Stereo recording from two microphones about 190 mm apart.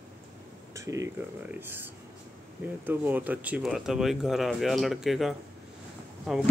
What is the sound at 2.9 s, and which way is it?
Speech, 10° right (ahead or behind).